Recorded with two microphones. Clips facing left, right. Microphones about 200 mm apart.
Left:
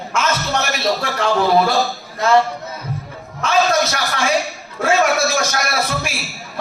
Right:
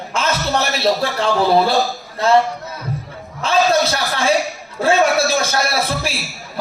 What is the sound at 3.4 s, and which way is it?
A man's voice, 30° right (ahead or behind).